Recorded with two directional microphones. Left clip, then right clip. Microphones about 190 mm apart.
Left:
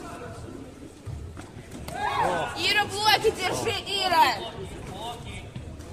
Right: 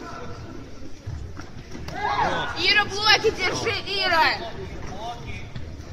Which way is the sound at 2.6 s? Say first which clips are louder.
Right 6 dB; 55° left (ahead or behind).